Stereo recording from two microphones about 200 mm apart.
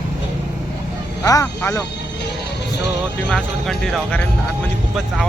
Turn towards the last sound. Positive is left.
turn(degrees=5)  # may be behind; listen again after turning